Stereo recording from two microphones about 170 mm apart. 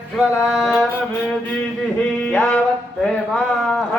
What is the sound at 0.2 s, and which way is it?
Music, centre (ahead or behind).